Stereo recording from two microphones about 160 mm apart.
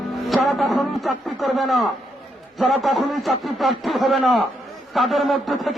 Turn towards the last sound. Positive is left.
turn(degrees=0)  # may be behind; listen again after turning